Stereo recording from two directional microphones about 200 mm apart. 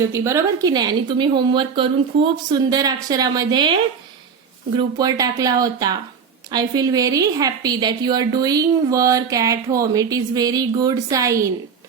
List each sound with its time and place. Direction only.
0.1 s a woman's voice: 15° right (ahead or behind)
4.9 s a woman's voice: 20° right (ahead or behind)